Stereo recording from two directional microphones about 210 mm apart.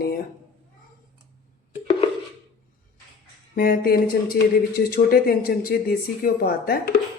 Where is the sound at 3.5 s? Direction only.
45° left (ahead or behind).